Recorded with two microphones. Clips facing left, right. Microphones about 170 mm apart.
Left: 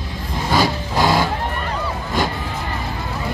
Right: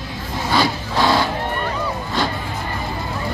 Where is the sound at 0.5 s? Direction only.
15° left (ahead or behind).